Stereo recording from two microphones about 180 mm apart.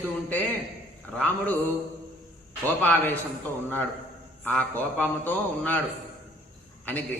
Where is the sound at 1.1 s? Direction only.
10° left (ahead or behind).